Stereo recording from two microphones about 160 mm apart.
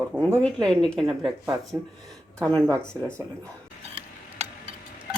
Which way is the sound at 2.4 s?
10° left (ahead or behind).